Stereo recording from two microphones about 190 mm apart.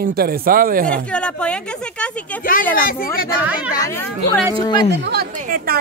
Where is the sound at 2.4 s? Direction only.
45° left (ahead or behind).